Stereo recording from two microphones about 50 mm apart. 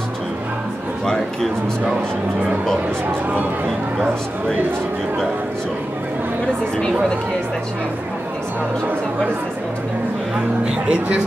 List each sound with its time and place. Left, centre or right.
1.0 s speech: centre
10.3 s speech: right